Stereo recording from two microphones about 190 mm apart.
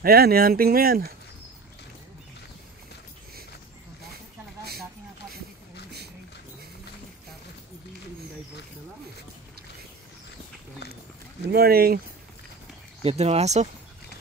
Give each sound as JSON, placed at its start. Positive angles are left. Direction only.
{"t": 0.0, "sound": "speech", "side_deg": -50}
{"t": 11.5, "sound": "speech", "side_deg": -55}
{"t": 13.0, "sound": "speech", "side_deg": -35}